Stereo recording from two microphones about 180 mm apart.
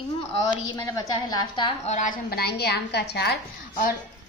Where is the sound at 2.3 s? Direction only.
60° left (ahead or behind).